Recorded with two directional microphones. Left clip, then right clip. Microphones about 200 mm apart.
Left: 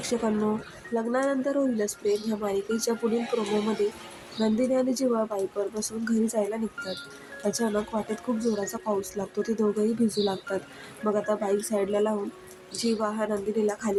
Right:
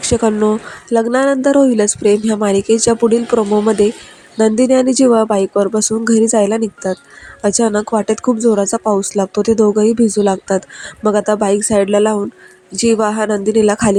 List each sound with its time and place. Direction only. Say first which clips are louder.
0.0 s speech: right 14 dB; 40° right (ahead or behind)